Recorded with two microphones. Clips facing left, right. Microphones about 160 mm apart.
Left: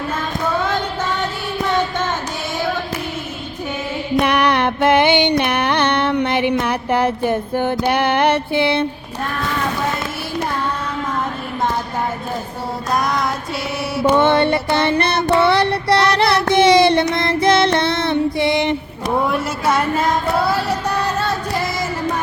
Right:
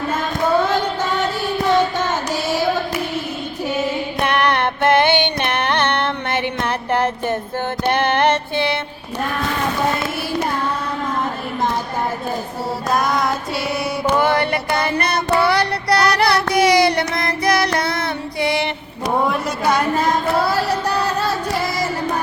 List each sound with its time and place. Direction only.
4.2 s music: 10° left (ahead or behind)
12.9 s speech: centre (ahead or behind)
14.2 s child singing: 25° left (ahead or behind)
19.3 s speech: centre (ahead or behind)